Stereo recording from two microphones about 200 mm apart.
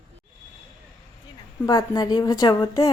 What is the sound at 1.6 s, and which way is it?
A woman's voice, 20° left (ahead or behind).